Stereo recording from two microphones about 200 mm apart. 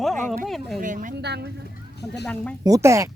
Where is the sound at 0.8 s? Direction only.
40° right (ahead or behind).